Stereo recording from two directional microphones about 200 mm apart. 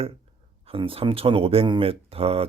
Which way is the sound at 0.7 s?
25° right (ahead or behind).